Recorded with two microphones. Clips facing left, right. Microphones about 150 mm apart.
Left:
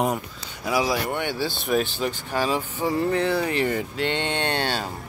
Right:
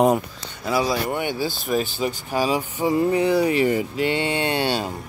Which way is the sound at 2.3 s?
10° right (ahead or behind).